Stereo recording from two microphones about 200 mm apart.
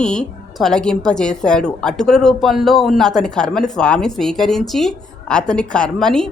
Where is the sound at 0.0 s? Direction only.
5° left (ahead or behind).